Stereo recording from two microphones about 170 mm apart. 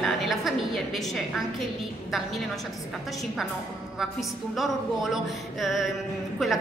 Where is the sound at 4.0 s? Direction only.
Centre (ahead or behind).